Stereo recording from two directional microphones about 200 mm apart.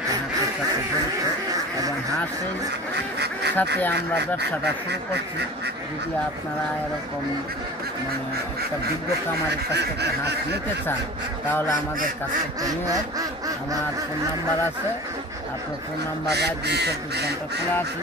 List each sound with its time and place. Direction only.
2.9 s goose: 55° right (ahead or behind)
9.7 s speech: 55° right (ahead or behind)
12.8 s quack: 20° right (ahead or behind)
16.3 s speech: 55° right (ahead or behind)